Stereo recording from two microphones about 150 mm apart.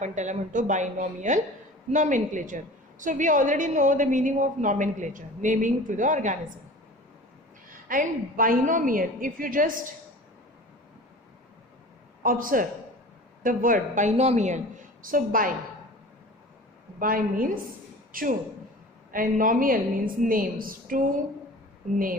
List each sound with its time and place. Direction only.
0.0 s a woman's voice: 55° right (ahead or behind)
7.7 s a woman's voice: 65° right (ahead or behind)
12.2 s a woman's voice: 70° right (ahead or behind)
17.0 s a woman's voice: 70° right (ahead or behind)